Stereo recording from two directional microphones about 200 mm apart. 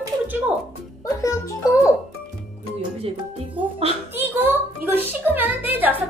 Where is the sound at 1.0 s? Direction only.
15° left (ahead or behind).